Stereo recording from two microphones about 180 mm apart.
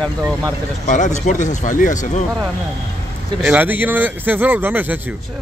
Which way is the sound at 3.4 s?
10° right (ahead or behind).